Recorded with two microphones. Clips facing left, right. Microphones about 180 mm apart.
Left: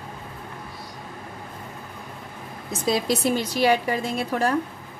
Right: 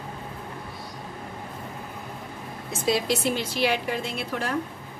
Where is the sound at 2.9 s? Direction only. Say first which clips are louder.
Left 2 dB; 40° left (ahead or behind).